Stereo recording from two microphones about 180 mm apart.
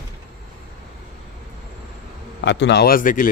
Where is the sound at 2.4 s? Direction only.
75° left (ahead or behind); by 3.2 s 50° left (ahead or behind).